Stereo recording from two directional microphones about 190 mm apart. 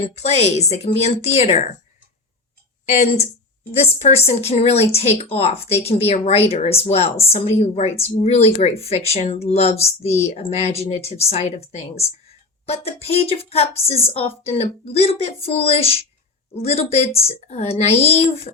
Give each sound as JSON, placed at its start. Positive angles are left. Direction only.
{"t": 0.1, "sound": "speech", "side_deg": 35}
{"t": 3.7, "sound": "speech", "side_deg": 35}